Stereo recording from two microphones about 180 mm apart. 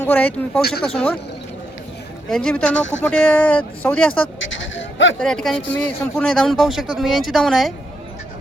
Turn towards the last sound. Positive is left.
turn(degrees=0)  # may be behind; listen again after turning